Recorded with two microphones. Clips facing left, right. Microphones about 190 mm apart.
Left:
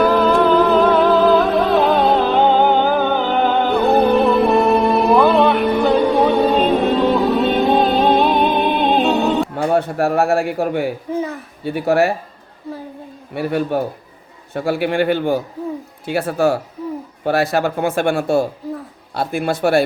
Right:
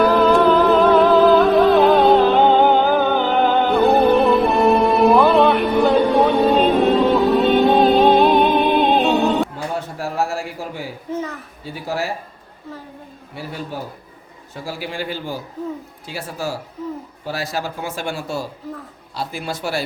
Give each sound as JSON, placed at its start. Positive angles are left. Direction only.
{"t": 0.0, "sound": "music", "side_deg": 0}
{"t": 9.6, "sound": "a sound", "side_deg": 60}
{"t": 11.6, "sound": "speech", "side_deg": 60}
{"t": 13.3, "sound": "speech", "side_deg": 65}